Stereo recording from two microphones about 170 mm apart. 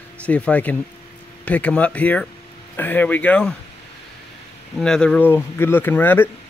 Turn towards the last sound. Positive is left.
turn(degrees=10)  # may be behind; listen again after turning